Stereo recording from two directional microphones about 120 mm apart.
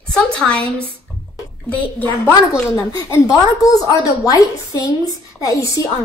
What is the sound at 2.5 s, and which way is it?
A woman's voice, 25° left (ahead or behind).